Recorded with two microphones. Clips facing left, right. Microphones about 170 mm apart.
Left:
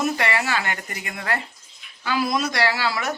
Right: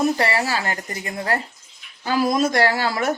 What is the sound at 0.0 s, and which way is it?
Speech, 35° right (ahead or behind).